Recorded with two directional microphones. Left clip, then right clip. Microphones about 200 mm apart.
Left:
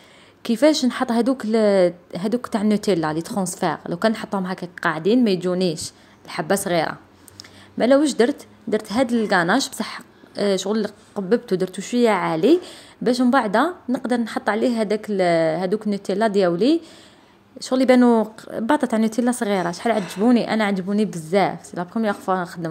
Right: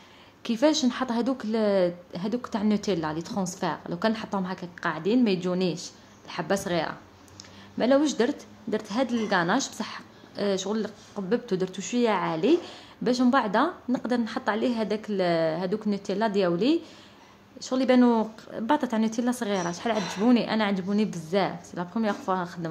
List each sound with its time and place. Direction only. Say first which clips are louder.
0.4 s a woman's voice: left 6 dB; 25° left (ahead or behind)